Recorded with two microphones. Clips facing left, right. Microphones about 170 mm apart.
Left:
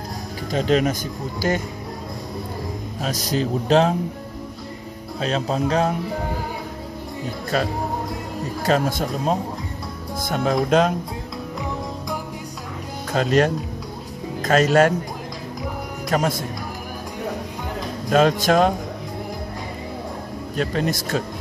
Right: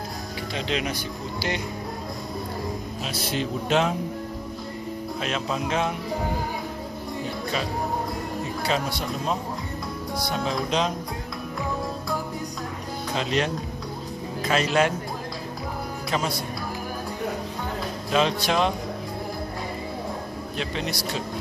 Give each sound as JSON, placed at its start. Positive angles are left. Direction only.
{"t": 0.5, "sound": "speech", "side_deg": 45}
{"t": 3.0, "sound": "speech", "side_deg": 40}
{"t": 5.2, "sound": "speech", "side_deg": 35}
{"t": 7.5, "sound": "speech", "side_deg": 45}
{"t": 13.1, "sound": "a man's voice", "side_deg": 45}
{"t": 16.1, "sound": "speech", "side_deg": 45}
{"t": 18.1, "sound": "speech", "side_deg": 45}
{"t": 20.5, "sound": "speech", "side_deg": 45}